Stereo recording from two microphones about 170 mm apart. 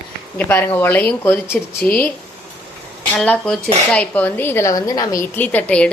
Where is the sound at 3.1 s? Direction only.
5° left (ahead or behind); by 5.1 s 20° left (ahead or behind).